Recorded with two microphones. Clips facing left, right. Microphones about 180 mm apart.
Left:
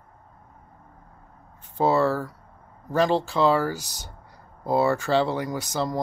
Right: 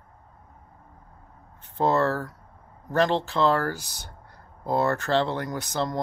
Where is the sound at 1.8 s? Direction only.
10° left (ahead or behind).